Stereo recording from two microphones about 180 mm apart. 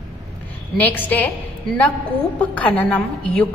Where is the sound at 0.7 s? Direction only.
10° left (ahead or behind).